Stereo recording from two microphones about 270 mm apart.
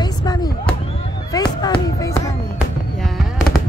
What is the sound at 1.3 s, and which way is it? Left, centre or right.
Speech, centre.